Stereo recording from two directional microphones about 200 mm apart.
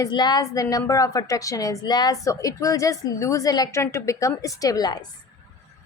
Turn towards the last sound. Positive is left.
turn(degrees=20)  # may be behind; listen again after turning